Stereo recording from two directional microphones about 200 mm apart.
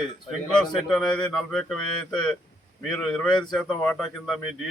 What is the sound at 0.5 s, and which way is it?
Speech, centre (ahead or behind).